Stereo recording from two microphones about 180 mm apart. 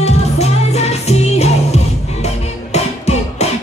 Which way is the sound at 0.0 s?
35° left (ahead or behind).